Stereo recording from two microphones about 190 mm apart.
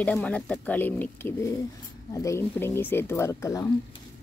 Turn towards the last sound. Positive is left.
turn(degrees=15)  # may be behind; listen again after turning